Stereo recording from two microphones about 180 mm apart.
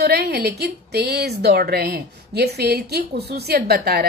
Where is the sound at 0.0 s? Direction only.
65° right (ahead or behind).